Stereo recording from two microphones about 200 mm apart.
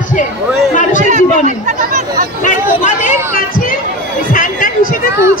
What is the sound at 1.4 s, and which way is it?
Speech, 40° right (ahead or behind).